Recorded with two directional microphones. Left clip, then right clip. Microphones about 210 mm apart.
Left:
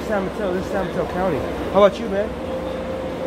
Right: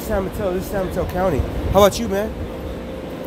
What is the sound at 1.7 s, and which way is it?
Speech, 55° right (ahead or behind).